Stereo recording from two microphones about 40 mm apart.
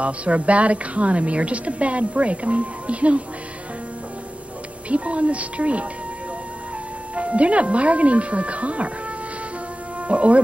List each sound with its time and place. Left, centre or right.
0.0 s a woman's voice: right
4.8 s a woman's voice: right
7.2 s a woman's voice: right
10.0 s a woman's voice: right